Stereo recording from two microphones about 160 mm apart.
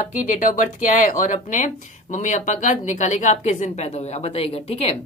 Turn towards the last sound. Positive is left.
turn(degrees=40)  # may be behind; listen again after turning